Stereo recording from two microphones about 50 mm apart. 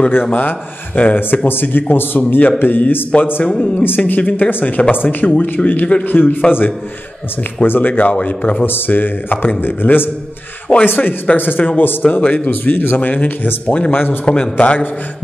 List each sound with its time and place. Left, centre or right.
0.4 s speech: left
3.4 s a man's voice: centre
3.8 s speech: left
8.1 s a man's voice: left
8.6 s a man's voice: left
12.2 s a man's voice: left
12.4 s speech: left
14.2 s a man's voice: left